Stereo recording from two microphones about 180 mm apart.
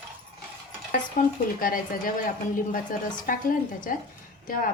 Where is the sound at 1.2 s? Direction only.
50° left (ahead or behind).